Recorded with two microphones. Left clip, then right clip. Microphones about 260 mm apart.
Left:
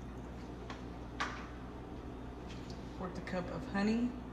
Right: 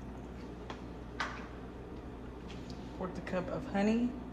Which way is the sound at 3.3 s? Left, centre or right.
Left.